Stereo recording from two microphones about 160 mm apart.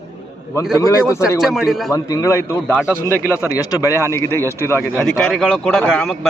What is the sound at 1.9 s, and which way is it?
Speech, 20° left (ahead or behind).